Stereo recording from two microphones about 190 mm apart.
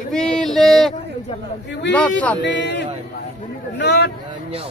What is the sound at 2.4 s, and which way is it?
A man's voice, 70° left (ahead or behind).